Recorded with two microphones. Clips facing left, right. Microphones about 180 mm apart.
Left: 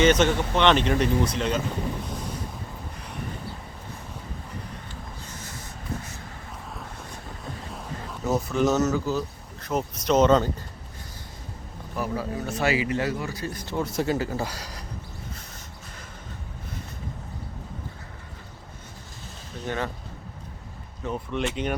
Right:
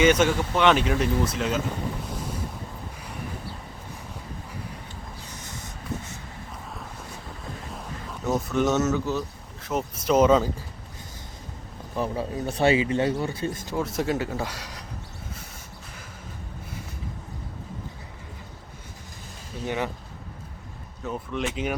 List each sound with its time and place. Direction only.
0.0 s speech: 10° right (ahead or behind)
7.7 s speech: centre (ahead or behind)
11.9 s speech: 25° right (ahead or behind)
13.7 s speech: centre (ahead or behind)
19.6 s speech: 15° right (ahead or behind)
21.0 s speech: centre (ahead or behind)